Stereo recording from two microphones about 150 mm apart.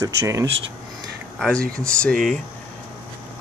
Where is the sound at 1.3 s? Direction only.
Centre (ahead or behind).